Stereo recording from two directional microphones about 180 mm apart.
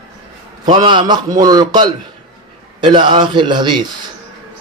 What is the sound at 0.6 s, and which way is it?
Speech, 25° right (ahead or behind).